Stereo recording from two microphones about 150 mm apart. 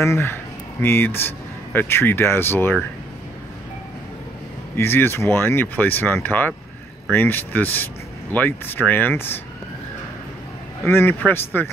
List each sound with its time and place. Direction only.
0.0 s speech: 15° left (ahead or behind)
4.7 s speech: 15° left (ahead or behind)
10.9 s speech: 15° left (ahead or behind)